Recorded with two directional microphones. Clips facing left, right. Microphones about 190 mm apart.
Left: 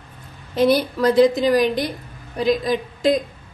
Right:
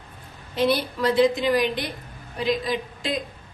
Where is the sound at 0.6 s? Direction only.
40° left (ahead or behind).